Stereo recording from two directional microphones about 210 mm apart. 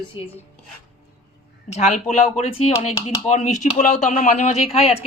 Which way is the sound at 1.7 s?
35° left (ahead or behind).